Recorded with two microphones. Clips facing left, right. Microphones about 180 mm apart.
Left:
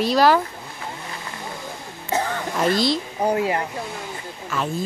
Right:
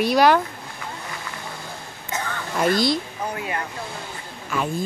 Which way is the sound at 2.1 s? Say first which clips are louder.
Left 6 dB; 35° left (ahead or behind).